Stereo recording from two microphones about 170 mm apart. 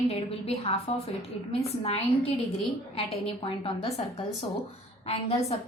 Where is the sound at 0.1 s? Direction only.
35° left (ahead or behind).